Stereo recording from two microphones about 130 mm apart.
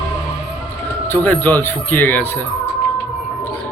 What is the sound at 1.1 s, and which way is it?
Speech, 15° left (ahead or behind).